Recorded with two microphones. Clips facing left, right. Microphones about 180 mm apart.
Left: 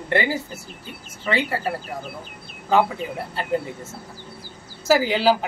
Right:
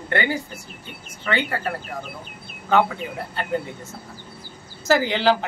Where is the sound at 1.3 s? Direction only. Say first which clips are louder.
Left 1 dB; 30° left (ahead or behind).